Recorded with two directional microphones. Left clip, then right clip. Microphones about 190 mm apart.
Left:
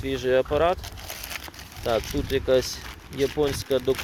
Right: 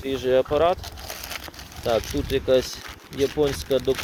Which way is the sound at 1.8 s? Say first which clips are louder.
Right 2 dB; 15° right (ahead or behind).